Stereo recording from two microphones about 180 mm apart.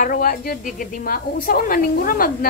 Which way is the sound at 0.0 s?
50° left (ahead or behind).